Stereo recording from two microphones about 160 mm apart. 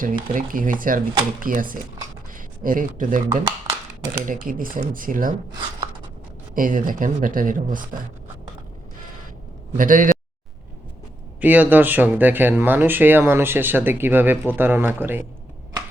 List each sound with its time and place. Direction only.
0.0 s speech: 60° right (ahead or behind)
4.3 s speech: 60° right (ahead or behind)
6.5 s speech: 60° right (ahead or behind)
9.7 s speech: 55° right (ahead or behind)
11.3 s speech: 10° right (ahead or behind)